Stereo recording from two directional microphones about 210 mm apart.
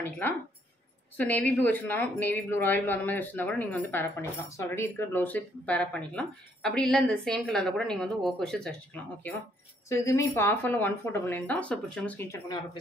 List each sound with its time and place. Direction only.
1.1 s speech: 5° left (ahead or behind)
9.8 s speech: 10° left (ahead or behind)